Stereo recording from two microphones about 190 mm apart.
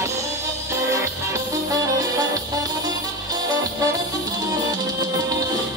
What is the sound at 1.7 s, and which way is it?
Music, 20° right (ahead or behind).